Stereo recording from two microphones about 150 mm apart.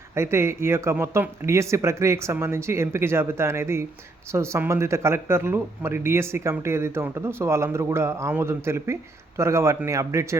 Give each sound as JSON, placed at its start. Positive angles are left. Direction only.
{"t": 0.1, "sound": "speech", "side_deg": -15}